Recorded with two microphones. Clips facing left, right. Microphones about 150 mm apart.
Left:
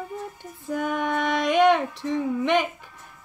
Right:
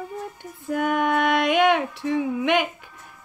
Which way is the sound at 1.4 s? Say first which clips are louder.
Even; 5° right (ahead or behind).